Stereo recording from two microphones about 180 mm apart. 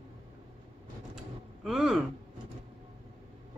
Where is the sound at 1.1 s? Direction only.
Centre (ahead or behind).